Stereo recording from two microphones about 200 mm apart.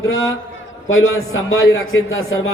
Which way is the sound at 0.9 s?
90° left.